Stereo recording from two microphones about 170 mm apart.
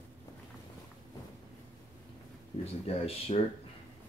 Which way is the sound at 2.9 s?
35° left (ahead or behind).